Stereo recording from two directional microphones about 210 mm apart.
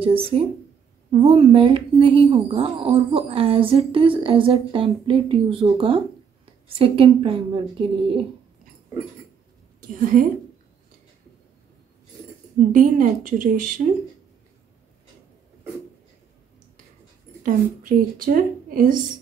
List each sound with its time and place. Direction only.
0.0 s a woman's voice: 25° right (ahead or behind)
10.1 s speech: 35° right (ahead or behind)
12.7 s speech: 40° right (ahead or behind)
17.4 s a woman's voice: 40° right (ahead or behind)